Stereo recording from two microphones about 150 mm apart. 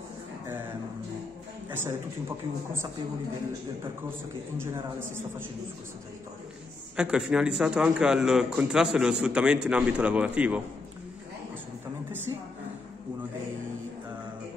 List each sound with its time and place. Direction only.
1.7 s a man's voice: 15° right (ahead or behind)
7.0 s a man's voice: 5° right (ahead or behind)